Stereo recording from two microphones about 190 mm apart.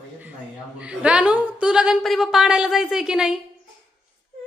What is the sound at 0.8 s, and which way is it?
A woman's voice, 5° right (ahead or behind).